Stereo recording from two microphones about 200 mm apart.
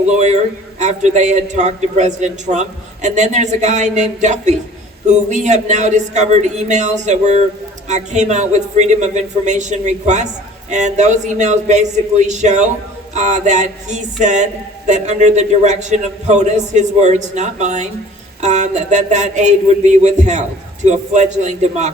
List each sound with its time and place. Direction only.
0.8 s a man's voice: 35° right (ahead or behind)